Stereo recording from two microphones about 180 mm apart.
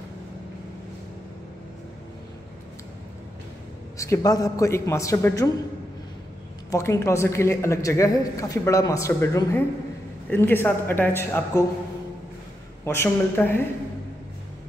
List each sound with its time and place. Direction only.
4.0 s a woman's voice: 20° left (ahead or behind)
6.7 s a woman's voice: 15° left (ahead or behind)
12.8 s a woman's voice: 15° left (ahead or behind)